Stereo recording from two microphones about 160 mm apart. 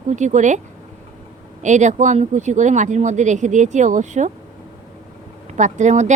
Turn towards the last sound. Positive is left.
turn(degrees=-50)  # may be behind; listen again after turning